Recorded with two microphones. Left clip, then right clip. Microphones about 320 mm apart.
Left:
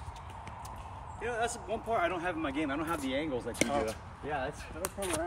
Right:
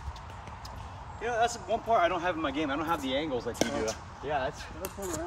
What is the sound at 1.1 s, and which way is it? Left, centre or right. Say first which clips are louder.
Speech: right 5 dB; centre.